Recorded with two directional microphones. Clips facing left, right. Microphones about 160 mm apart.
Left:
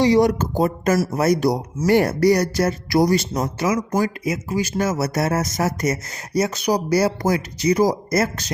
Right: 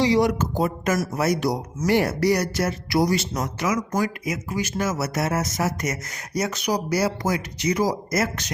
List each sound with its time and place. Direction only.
0.0 s speech: 45° left (ahead or behind)